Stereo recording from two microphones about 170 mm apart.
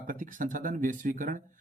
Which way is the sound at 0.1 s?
50° right (ahead or behind).